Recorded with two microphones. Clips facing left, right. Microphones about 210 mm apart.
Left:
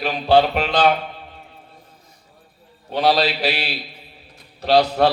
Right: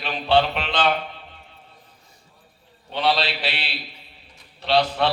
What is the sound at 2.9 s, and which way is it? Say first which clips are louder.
A man's voice: left 5 dB; 45° left (ahead or behind).